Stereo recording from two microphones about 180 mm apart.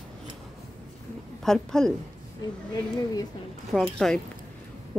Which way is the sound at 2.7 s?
20° left (ahead or behind).